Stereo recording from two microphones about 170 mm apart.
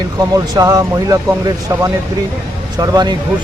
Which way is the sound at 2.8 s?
25° right (ahead or behind).